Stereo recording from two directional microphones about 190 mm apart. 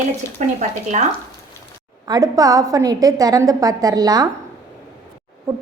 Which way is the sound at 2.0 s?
20° right (ahead or behind).